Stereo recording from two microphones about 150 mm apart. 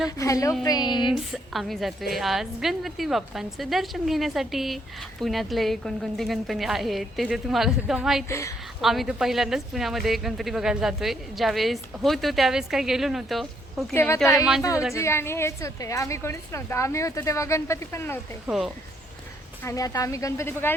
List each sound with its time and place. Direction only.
0.2 s a woman's voice: 20° left (ahead or behind)
1.0 s speech: centre (ahead or behind)
8.3 s a woman's voice: 20° left (ahead or behind)
8.8 s speech: centre (ahead or behind)
13.9 s a woman's voice: 15° left (ahead or behind)
18.4 s speech: centre (ahead or behind)
19.6 s a woman's voice: 20° left (ahead or behind)